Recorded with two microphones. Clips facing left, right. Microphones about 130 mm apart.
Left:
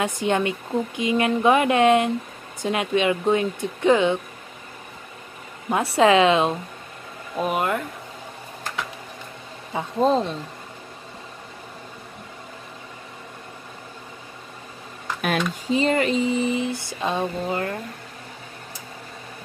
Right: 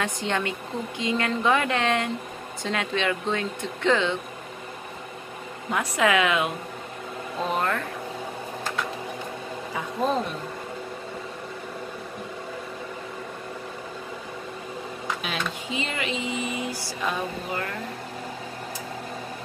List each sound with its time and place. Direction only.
0.0 s a woman's voice: 20° left (ahead or behind)
5.9 s speech: 25° left (ahead or behind)
7.4 s a woman's voice: 15° left (ahead or behind)
9.8 s speech: 30° left (ahead or behind)
15.2 s speech: 45° left (ahead or behind); by 17.7 s 30° left (ahead or behind)